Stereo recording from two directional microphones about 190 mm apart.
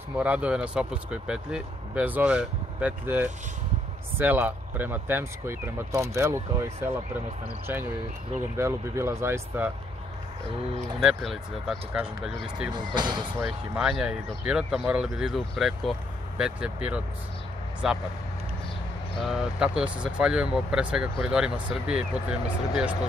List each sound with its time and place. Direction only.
0.2 s speech: 5° right (ahead or behind)
8.5 s speech: 15° right (ahead or behind)
11.0 s speech: centre (ahead or behind)
12.7 s speech: 25° right (ahead or behind)
13.7 s speech: 5° right (ahead or behind)
19.2 s speech: 5° right (ahead or behind)